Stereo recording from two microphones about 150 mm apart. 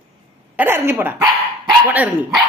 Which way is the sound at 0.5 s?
15° right (ahead or behind).